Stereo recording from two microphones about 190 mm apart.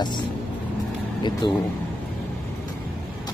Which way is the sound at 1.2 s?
25° left (ahead or behind).